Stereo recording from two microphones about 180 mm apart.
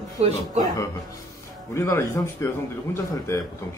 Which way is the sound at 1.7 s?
15° left (ahead or behind).